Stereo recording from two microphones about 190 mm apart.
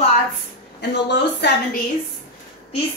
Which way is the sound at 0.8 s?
60° left (ahead or behind).